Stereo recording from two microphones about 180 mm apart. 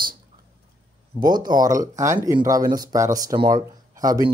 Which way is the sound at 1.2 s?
25° right (ahead or behind).